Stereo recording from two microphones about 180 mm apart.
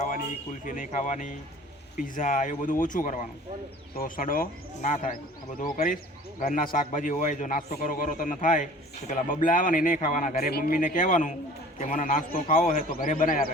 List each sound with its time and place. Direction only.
0.6 s speech: 45° left (ahead or behind)